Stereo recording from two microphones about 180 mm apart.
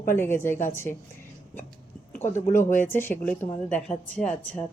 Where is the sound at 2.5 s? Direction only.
45° left (ahead or behind).